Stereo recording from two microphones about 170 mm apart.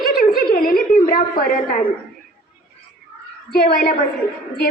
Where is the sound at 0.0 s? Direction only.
60° left (ahead or behind).